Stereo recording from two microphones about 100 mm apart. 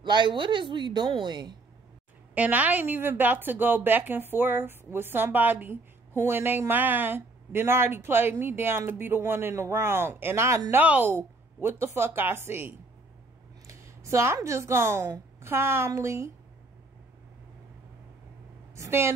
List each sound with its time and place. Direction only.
0.0 s a woman's voice: 50° right (ahead or behind)
2.3 s a woman's voice: 15° right (ahead or behind)
18.8 s a woman's voice: 25° right (ahead or behind)